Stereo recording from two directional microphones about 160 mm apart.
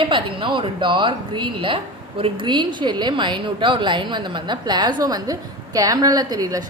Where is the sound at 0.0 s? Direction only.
30° right (ahead or behind).